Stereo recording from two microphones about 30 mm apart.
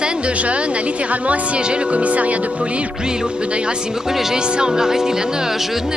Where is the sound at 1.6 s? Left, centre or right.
Right.